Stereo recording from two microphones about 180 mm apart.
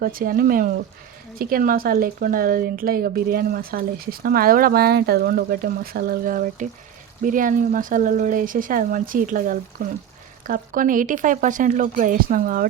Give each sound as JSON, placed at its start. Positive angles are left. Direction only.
{"t": 0.0, "sound": "a woman's voice", "side_deg": -55}